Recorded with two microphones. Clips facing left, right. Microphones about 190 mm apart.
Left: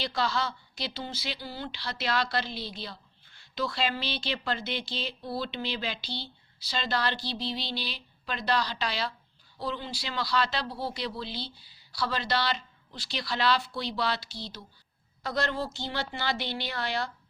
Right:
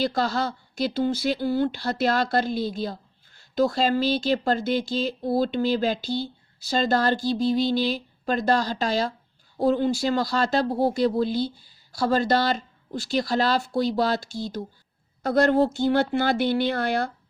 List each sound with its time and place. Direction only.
0.0 s speech: 45° right (ahead or behind)